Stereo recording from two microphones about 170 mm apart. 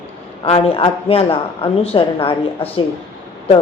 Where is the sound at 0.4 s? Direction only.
35° left (ahead or behind).